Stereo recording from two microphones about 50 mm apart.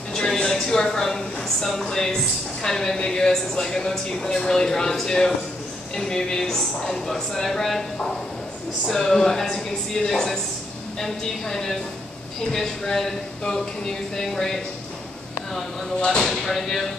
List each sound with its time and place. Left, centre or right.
0.1 s a woman's voice: centre
16.0 s speech: centre
16.3 s speech: centre